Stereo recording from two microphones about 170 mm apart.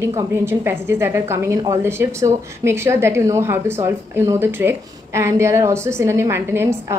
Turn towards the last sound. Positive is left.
turn(degrees=-15)  # may be behind; listen again after turning